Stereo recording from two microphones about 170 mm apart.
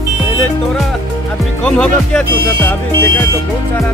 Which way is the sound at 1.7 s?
5° left (ahead or behind).